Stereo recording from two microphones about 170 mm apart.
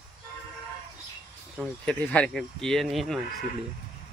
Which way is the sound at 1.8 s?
5° left (ahead or behind).